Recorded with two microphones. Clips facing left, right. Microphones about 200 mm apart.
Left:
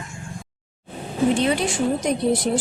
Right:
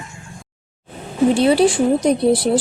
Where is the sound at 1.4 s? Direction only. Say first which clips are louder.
Right 7 dB; 35° right (ahead or behind).